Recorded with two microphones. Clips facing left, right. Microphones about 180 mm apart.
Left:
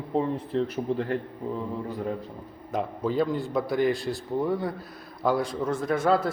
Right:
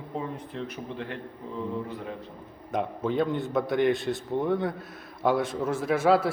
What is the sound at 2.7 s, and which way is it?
A man's voice, centre (ahead or behind).